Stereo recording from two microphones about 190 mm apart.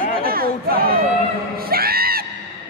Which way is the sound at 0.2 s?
50° right (ahead or behind).